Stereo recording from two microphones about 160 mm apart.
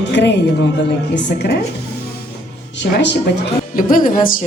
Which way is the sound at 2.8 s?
90° left.